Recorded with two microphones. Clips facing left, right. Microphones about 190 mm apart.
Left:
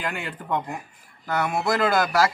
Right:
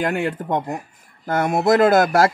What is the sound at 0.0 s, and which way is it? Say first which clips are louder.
Speech: right 10 dB; 45° right (ahead or behind).